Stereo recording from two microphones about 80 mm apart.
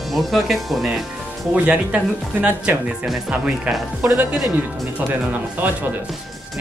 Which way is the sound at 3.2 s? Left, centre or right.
Centre.